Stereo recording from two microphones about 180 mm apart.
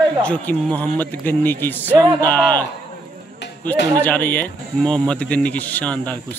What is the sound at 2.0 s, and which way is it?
Speech, 20° right (ahead or behind).